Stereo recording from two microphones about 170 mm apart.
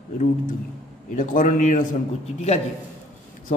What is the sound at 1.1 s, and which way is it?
Speech, 50° left (ahead or behind).